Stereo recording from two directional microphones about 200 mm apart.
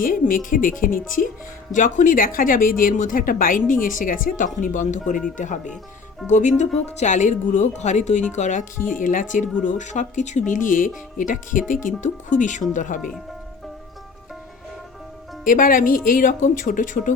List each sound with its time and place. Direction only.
0.0 s a woman's voice: 40° left (ahead or behind)
6.2 s speech: 35° left (ahead or behind)
15.4 s a woman's voice: 45° left (ahead or behind)